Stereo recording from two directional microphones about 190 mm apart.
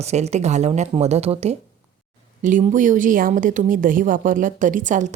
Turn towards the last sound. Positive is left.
turn(degrees=-40)  # may be behind; listen again after turning